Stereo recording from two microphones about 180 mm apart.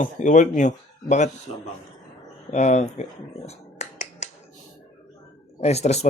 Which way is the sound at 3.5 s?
40° left (ahead or behind).